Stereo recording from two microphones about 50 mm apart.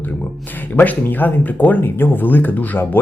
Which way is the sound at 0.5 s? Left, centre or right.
Left.